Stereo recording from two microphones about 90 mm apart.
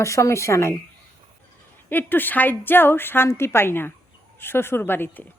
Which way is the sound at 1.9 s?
20° left (ahead or behind).